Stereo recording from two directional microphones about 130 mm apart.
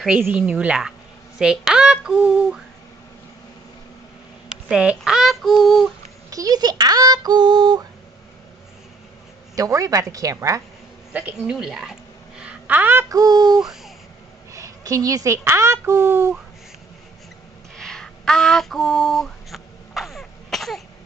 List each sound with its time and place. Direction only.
0.2 s a woman's voice: 10° right (ahead or behind)
4.6 s female singing: 5° right (ahead or behind)
6.3 s speech: 30° right (ahead or behind)
9.6 s a woman's voice: 25° right (ahead or behind)
11.4 s a woman's voice: 5° right (ahead or behind)
13.2 s speech: 30° right (ahead or behind)
13.6 s a sound: 5° right (ahead or behind)
14.5 s speech: 25° right (ahead or behind)
17.7 s a sound: 5° left (ahead or behind)